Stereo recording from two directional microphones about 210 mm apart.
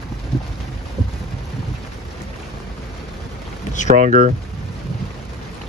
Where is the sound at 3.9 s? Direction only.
40° right (ahead or behind).